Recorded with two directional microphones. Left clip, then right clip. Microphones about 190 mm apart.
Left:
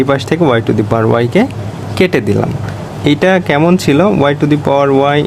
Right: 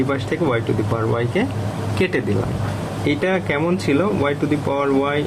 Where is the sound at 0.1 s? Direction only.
60° left (ahead or behind).